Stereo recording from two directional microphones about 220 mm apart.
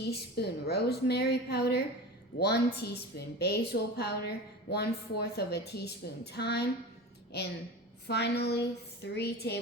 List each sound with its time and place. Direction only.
0.3 s a woman's voice: 45° left (ahead or behind)
8.0 s a woman's voice: 50° left (ahead or behind)